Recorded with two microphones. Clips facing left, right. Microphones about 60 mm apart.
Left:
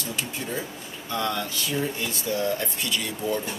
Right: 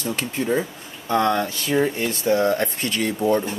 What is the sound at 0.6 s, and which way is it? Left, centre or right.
Speech, right.